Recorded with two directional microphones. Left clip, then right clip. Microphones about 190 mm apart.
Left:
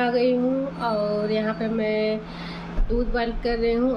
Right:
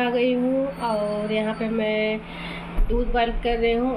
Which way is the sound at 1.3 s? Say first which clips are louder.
Even; 10° left (ahead or behind).